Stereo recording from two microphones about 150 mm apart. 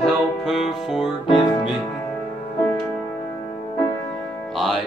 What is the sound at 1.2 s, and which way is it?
Music, 35° left (ahead or behind).